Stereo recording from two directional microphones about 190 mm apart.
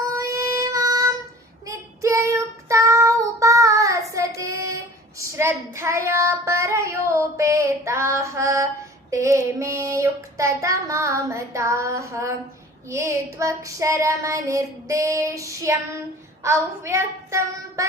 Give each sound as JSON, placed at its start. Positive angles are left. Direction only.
{"t": 0.1, "sound": "child singing", "side_deg": -15}
{"t": 12.9, "sound": "a sound", "side_deg": -15}
{"t": 16.4, "sound": "a woman's voice", "side_deg": -15}